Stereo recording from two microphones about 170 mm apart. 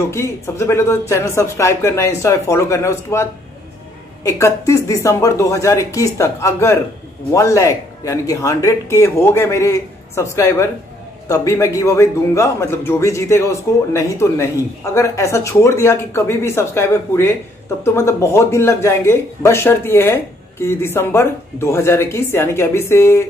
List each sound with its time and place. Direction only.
0.1 s speech: 15° left (ahead or behind)